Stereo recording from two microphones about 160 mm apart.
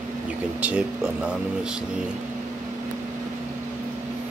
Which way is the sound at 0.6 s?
10° right (ahead or behind).